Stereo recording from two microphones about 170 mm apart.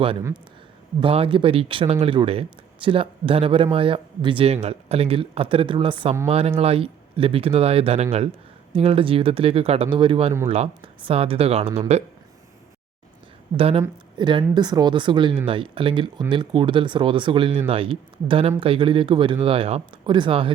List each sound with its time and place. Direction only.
1.0 s speech: 35° right (ahead or behind)
13.6 s speech: 35° right (ahead or behind)